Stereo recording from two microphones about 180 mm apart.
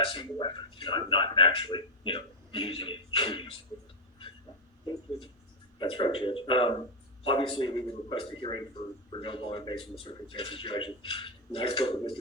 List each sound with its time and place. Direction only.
0.1 s a man's voice: 25° left (ahead or behind)
5.8 s a man's voice: 30° left (ahead or behind)